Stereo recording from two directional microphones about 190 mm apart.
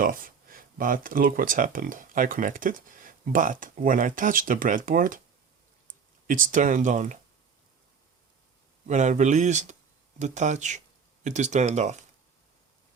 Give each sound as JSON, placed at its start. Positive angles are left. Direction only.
{"t": 0.0, "sound": "speech", "side_deg": -45}
{"t": 6.2, "sound": "speech", "side_deg": -45}
{"t": 8.9, "sound": "speech", "side_deg": -40}